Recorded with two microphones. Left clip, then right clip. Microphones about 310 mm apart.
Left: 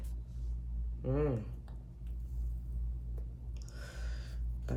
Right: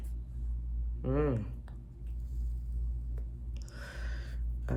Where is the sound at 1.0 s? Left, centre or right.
Right.